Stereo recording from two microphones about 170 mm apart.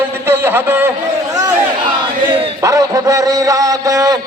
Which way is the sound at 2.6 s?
20° right (ahead or behind).